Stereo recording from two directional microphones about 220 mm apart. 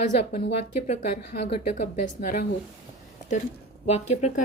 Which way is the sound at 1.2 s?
50° left (ahead or behind).